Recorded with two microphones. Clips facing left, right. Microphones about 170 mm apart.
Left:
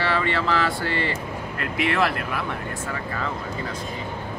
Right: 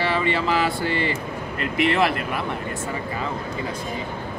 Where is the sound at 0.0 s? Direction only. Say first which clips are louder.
Right 1 dB; 15° right (ahead or behind).